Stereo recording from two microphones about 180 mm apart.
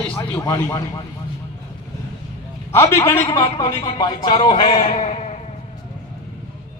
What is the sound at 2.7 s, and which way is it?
A man's voice, 15° left (ahead or behind).